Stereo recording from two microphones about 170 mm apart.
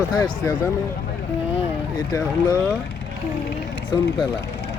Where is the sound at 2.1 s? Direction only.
20° left (ahead or behind).